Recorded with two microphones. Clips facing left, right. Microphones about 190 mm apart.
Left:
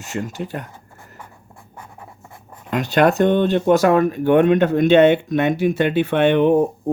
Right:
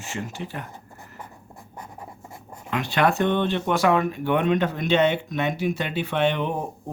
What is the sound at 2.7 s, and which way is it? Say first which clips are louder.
Speech: left 6 dB; 45° left (ahead or behind).